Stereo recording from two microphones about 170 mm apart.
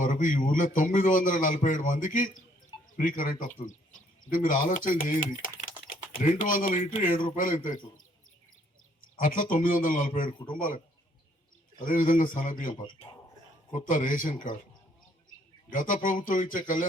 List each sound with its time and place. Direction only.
0.0 s a man's voice: 50° left (ahead or behind)
4.3 s a man's voice: 50° left (ahead or behind)
9.2 s a man's voice: 50° left (ahead or behind)
11.9 s a man's voice: 50° left (ahead or behind)
13.7 s a man's voice: 50° left (ahead or behind)
15.7 s a man's voice: 50° left (ahead or behind)